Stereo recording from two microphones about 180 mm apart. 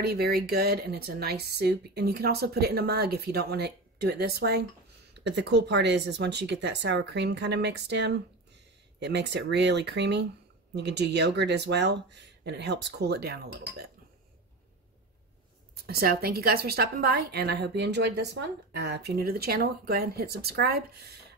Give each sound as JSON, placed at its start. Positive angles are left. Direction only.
{"t": 0.0, "sound": "a woman's voice", "side_deg": -60}
{"t": 5.1, "sound": "speech", "side_deg": -70}
{"t": 15.7, "sound": "a woman's voice", "side_deg": -60}